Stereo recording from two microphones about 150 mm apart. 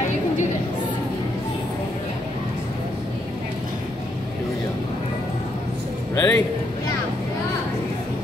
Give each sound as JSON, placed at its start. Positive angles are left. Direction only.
{"t": 6.1, "sound": "a man's voice", "side_deg": 15}